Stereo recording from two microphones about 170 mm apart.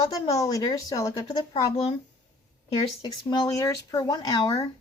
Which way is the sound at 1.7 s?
35° left (ahead or behind).